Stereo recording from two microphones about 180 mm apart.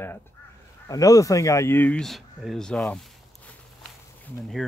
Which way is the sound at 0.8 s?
20° left (ahead or behind).